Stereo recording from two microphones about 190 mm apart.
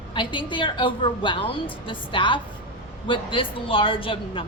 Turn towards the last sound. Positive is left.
turn(degrees=25)  # may be behind; listen again after turning